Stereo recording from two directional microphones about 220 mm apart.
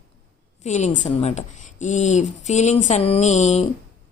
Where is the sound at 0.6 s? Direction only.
30° left (ahead or behind).